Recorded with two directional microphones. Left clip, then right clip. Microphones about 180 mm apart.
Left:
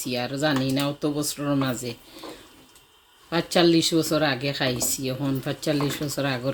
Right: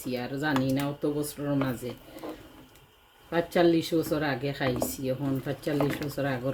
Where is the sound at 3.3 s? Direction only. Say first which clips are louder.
Left 3 dB; 45° left (ahead or behind).